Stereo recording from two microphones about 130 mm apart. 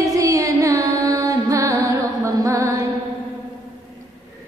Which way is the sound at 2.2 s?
25° right (ahead or behind).